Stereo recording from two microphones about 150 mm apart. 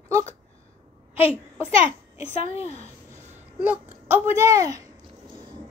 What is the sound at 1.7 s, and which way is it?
A child's voice, 40° left (ahead or behind).